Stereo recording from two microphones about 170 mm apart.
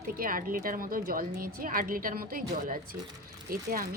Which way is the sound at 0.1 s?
55° right (ahead or behind).